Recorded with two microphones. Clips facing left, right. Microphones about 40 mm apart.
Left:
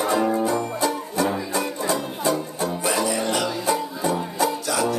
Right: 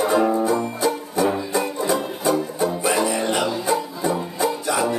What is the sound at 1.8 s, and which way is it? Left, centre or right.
Music, right.